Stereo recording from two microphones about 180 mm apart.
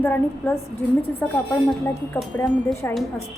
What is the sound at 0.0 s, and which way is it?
A woman's voice, 10° left (ahead or behind).